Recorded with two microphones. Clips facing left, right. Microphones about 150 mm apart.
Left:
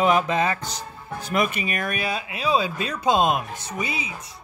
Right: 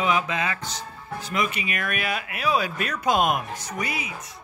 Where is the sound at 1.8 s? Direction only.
30° left (ahead or behind).